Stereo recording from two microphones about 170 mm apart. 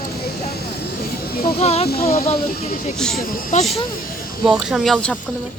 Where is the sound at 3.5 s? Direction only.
45° left (ahead or behind).